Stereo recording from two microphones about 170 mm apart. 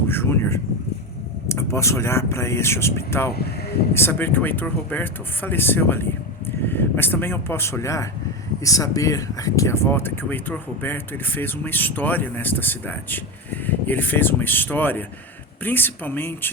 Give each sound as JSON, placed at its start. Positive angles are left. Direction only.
{"t": 0.1, "sound": "speech", "side_deg": 15}